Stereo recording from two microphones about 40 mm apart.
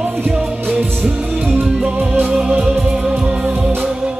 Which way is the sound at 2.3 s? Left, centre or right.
Right.